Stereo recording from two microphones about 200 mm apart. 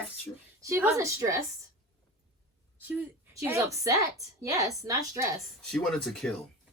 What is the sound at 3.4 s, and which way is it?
A woman's voice, 15° right (ahead or behind).